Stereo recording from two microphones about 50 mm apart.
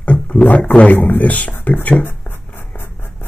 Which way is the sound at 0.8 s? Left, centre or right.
Left.